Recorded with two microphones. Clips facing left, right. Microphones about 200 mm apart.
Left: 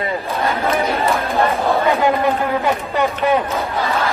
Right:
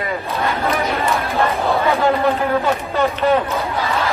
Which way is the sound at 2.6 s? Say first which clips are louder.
Even; 15° left (ahead or behind).